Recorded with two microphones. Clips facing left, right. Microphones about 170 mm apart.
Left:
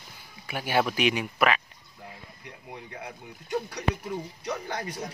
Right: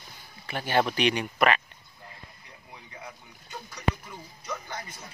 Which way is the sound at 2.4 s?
65° left (ahead or behind).